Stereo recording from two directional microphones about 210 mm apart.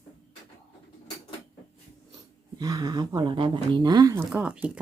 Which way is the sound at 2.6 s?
20° right (ahead or behind).